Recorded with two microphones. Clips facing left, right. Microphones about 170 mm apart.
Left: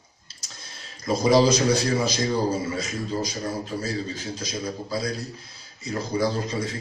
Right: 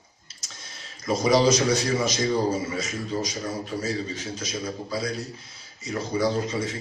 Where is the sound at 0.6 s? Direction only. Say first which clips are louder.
Left 1 dB; 30° left (ahead or behind).